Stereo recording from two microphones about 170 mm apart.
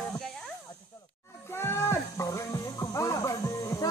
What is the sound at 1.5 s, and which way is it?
Music, 15° left (ahead or behind).